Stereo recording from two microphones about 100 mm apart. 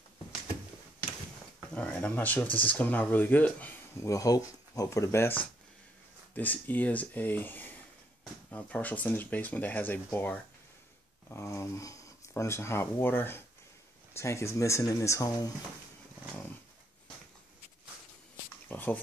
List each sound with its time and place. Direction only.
1.7 s speech: 10° left (ahead or behind)
2.4 s speech: 60° left (ahead or behind)
2.7 s speech: 15° left (ahead or behind)
3.9 s speech: 30° left (ahead or behind)
11.2 s speech: 30° left (ahead or behind)
18.7 s a sound: 20° left (ahead or behind)